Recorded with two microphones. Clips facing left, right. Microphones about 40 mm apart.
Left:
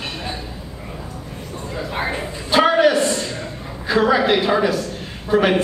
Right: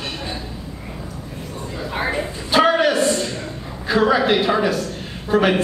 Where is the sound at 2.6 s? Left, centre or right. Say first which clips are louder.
Left 1 dB; centre.